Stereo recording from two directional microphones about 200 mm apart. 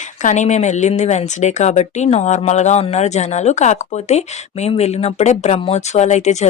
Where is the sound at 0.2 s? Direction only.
35° left (ahead or behind).